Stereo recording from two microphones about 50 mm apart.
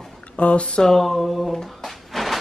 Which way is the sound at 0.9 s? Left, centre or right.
Centre.